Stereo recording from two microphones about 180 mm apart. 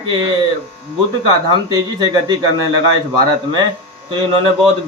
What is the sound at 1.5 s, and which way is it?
Speech, 20° right (ahead or behind).